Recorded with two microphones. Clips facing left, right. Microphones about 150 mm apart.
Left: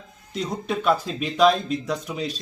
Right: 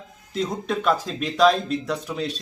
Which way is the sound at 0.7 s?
Centre (ahead or behind).